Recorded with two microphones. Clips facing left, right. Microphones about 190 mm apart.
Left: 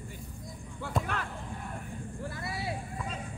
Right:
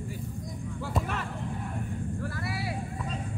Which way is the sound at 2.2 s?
20° left (ahead or behind).